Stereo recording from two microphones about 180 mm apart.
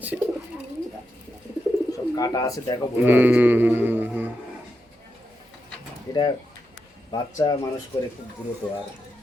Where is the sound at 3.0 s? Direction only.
10° right (ahead or behind).